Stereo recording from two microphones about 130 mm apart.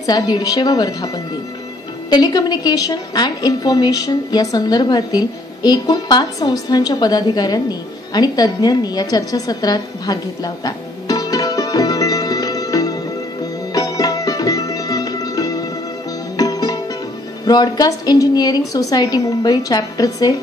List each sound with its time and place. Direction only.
0.0 s a woman's voice: 30° left (ahead or behind)
8.1 s a sound: 30° left (ahead or behind)
13.4 s music: 30° left (ahead or behind)
16.3 s sitar: 30° left (ahead or behind)
17.5 s a woman's voice: 30° left (ahead or behind)